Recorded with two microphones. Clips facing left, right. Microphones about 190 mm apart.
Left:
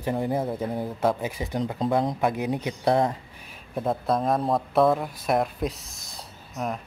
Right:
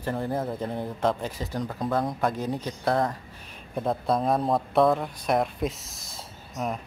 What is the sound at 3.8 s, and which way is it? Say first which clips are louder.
Speech: left 1 dB; centre (ahead or behind).